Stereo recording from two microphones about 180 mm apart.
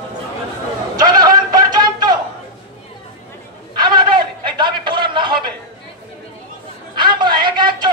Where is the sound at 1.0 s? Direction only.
20° right (ahead or behind).